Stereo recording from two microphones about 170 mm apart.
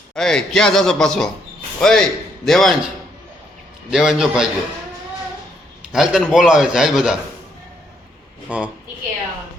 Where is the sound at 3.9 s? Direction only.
5° right (ahead or behind).